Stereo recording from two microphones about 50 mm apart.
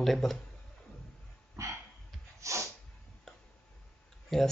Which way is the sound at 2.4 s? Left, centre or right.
Right.